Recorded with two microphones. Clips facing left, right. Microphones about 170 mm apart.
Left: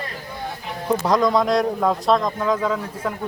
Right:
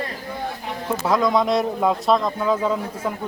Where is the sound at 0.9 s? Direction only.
5° right (ahead or behind).